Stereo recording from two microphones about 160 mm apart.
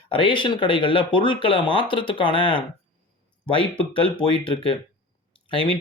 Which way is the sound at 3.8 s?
35° left (ahead or behind).